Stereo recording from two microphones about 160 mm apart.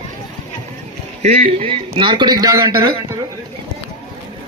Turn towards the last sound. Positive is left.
turn(degrees=-25)  # may be behind; listen again after turning